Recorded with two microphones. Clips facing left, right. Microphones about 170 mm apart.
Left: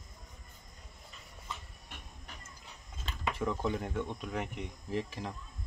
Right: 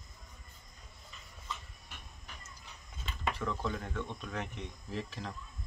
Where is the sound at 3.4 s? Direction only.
15° left (ahead or behind).